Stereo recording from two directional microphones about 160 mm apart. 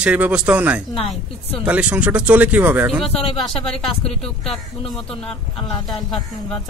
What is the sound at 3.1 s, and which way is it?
Speech, 35° left (ahead or behind).